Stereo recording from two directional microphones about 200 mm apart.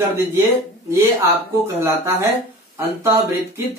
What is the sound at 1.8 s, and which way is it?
Speech, 15° right (ahead or behind).